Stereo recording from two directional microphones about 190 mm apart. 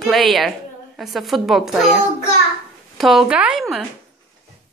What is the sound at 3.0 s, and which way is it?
Speech, centre (ahead or behind).